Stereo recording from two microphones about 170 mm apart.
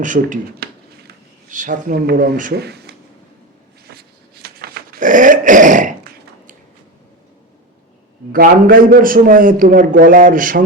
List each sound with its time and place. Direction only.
0.0 s speech: 50° right (ahead or behind); by 2.9 s 75° right (ahead or behind)
4.4 s dog: 65° right (ahead or behind); by 5.9 s 50° right (ahead or behind)
8.3 s a man's voice: 55° right (ahead or behind)